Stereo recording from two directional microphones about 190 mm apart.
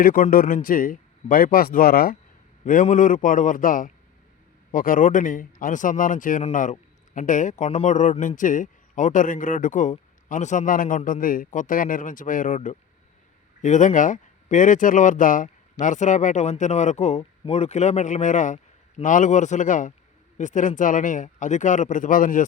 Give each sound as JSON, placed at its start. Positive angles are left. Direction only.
{"t": 0.0, "sound": "a man's voice", "side_deg": 45}